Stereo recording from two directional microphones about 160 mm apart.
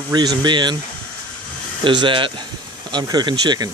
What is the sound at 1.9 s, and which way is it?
Speech, 30° right (ahead or behind).